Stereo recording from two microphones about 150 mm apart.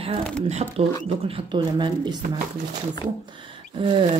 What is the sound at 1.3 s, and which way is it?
Speech, 30° right (ahead or behind).